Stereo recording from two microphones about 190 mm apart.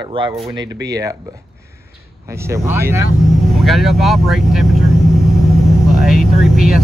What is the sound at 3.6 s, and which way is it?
Speech, centre (ahead or behind).